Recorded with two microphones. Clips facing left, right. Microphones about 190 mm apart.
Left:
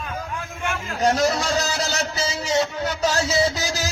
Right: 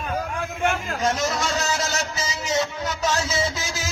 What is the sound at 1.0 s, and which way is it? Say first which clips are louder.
A man's voice: left 6 dB; 35° left (ahead or behind).